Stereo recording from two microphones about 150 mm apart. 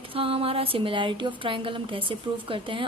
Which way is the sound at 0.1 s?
40° right (ahead or behind).